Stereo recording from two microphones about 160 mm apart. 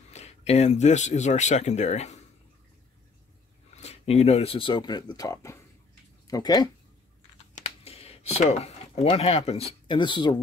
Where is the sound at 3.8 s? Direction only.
40° left (ahead or behind); by 6.6 s 25° left (ahead or behind).